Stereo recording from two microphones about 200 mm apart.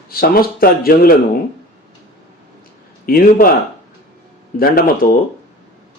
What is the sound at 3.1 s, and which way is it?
Speech, 45° left (ahead or behind).